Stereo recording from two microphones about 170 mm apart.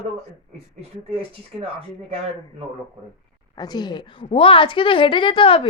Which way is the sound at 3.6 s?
25° left (ahead or behind).